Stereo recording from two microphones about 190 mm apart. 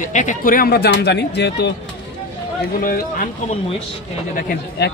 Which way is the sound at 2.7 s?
50° left (ahead or behind).